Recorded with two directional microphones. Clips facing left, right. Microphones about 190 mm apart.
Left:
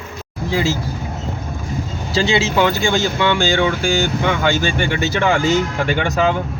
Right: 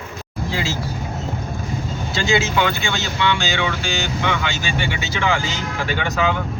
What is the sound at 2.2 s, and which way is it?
Speech, 30° left (ahead or behind).